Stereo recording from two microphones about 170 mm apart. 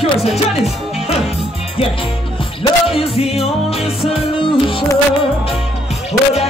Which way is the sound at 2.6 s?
35° left (ahead or behind).